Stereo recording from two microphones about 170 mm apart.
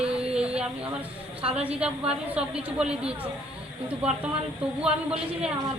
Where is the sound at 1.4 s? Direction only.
35° right (ahead or behind).